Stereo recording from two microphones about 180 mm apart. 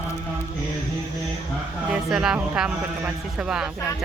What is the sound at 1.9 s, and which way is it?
Speech, 5° right (ahead or behind).